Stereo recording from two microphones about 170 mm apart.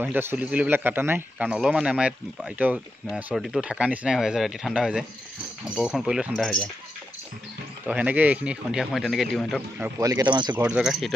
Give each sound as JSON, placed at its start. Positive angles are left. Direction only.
{"t": 0.0, "sound": "a man's voice", "side_deg": -15}
{"t": 7.8, "sound": "a man's voice", "side_deg": -10}
{"t": 9.9, "sound": "speech", "side_deg": -20}
{"t": 10.5, "sound": "a man's voice", "side_deg": -10}